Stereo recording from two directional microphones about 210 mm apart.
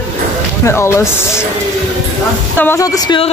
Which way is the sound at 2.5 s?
10° left (ahead or behind).